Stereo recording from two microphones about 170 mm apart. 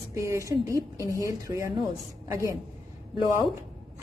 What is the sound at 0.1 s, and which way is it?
Speech, 20° right (ahead or behind).